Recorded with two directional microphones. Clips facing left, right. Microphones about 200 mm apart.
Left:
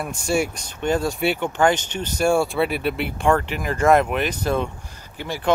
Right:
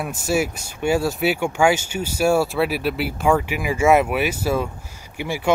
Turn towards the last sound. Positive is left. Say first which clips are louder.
# right 2 dB
turn(degrees=-10)  # may be behind; listen again after turning